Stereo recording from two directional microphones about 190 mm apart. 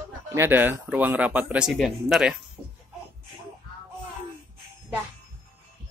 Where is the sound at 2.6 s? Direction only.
Centre (ahead or behind).